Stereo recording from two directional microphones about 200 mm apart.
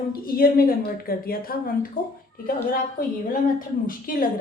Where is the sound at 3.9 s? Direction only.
45° left (ahead or behind).